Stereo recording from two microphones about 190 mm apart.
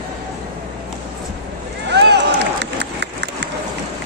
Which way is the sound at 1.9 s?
65° right (ahead or behind).